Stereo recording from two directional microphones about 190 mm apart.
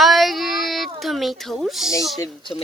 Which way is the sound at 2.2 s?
25° left (ahead or behind).